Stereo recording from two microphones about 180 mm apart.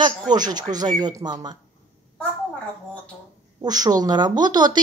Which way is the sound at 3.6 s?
20° right (ahead or behind).